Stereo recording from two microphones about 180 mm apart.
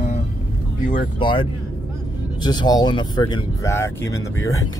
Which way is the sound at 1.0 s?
25° left (ahead or behind).